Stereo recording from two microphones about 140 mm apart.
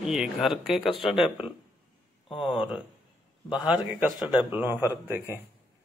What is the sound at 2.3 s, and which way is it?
Speech, 40° left (ahead or behind).